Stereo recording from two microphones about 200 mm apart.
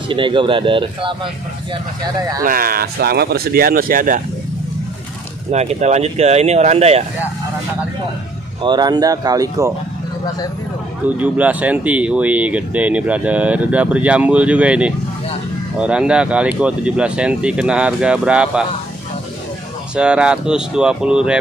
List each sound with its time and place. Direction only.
0.1 s speech: 25° right (ahead or behind)
2.4 s speech: 45° right (ahead or behind)
5.5 s speech: 35° right (ahead or behind)
8.6 s speech: 20° right (ahead or behind)
11.1 s speech: 5° right (ahead or behind)
20.0 s speech: 5° right (ahead or behind)